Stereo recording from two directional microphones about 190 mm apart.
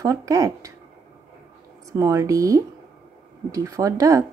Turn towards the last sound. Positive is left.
turn(degrees=-15)  # may be behind; listen again after turning